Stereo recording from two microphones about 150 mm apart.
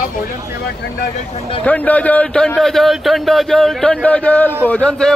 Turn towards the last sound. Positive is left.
turn(degrees=10)  # may be behind; listen again after turning